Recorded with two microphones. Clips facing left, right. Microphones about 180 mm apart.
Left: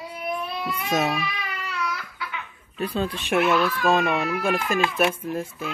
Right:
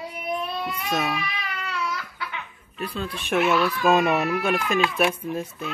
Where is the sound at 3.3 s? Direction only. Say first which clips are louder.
Even; centre (ahead or behind).